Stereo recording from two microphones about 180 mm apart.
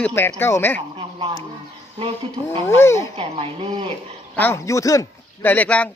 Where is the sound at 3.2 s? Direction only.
35° right (ahead or behind).